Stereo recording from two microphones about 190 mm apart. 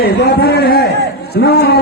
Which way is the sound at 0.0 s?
55° left (ahead or behind).